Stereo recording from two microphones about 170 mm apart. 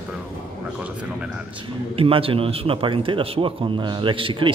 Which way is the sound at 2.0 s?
35° right (ahead or behind).